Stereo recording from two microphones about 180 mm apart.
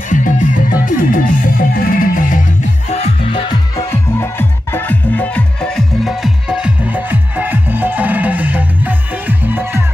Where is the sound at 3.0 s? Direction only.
30° left (ahead or behind).